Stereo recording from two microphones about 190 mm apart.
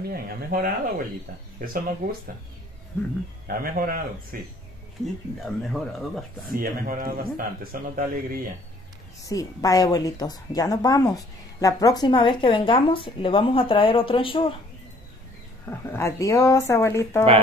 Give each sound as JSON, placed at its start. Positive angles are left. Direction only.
{"t": 0.1, "sound": "speech", "side_deg": -50}
{"t": 3.4, "sound": "speech", "side_deg": -50}
{"t": 5.4, "sound": "speech", "side_deg": 0}
{"t": 6.5, "sound": "speech", "side_deg": -50}
{"t": 9.2, "sound": "a woman's voice", "side_deg": 20}
{"t": 15.6, "sound": "speech", "side_deg": 10}